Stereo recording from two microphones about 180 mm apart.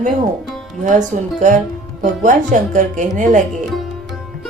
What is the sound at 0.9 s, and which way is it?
Speech, 45° right (ahead or behind).